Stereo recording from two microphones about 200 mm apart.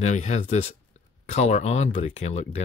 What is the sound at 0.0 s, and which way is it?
Speech, 35° left (ahead or behind).